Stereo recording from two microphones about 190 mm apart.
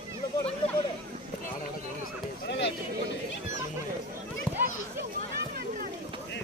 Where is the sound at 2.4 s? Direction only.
65° left (ahead or behind).